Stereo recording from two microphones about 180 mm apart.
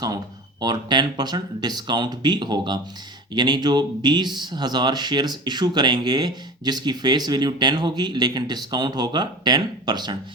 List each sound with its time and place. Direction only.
0.6 s speech: 25° right (ahead or behind)